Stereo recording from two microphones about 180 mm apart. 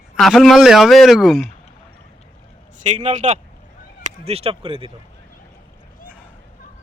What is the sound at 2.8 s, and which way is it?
A man's voice, 40° right (ahead or behind).